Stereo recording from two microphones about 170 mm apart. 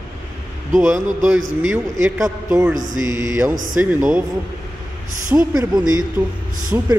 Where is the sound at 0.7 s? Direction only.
15° right (ahead or behind).